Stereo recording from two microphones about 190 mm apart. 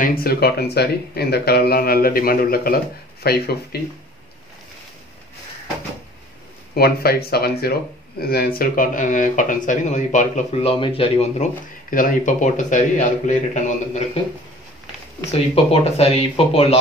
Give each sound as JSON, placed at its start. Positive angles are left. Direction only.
{"t": 0.0, "sound": "speech", "side_deg": 50}
{"t": 6.7, "sound": "speech", "side_deg": 55}
{"t": 11.9, "sound": "speech", "side_deg": 45}
{"t": 15.3, "sound": "speech", "side_deg": 30}